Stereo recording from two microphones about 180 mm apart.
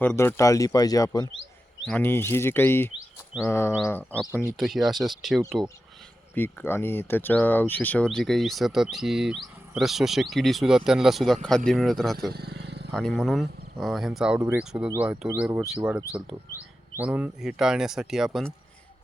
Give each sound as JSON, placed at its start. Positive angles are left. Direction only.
{"t": 0.0, "sound": "speech", "side_deg": 15}
{"t": 1.9, "sound": "speech", "side_deg": 10}
{"t": 4.5, "sound": "speech", "side_deg": 0}
{"t": 6.3, "sound": "speech", "side_deg": 10}
{"t": 12.3, "sound": "wild animals", "side_deg": -65}
{"t": 12.9, "sound": "speech", "side_deg": 5}
{"t": 17.0, "sound": "speech", "side_deg": -10}